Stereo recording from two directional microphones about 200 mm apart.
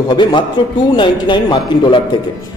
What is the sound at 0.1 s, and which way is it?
A man's voice, 25° left (ahead or behind).